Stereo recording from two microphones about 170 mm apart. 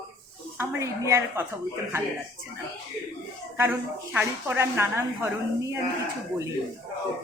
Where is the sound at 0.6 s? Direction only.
15° right (ahead or behind).